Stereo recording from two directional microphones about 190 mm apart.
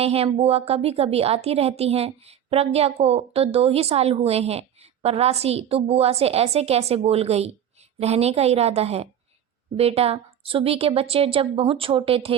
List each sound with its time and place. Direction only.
0.0 s a woman's voice: 30° right (ahead or behind)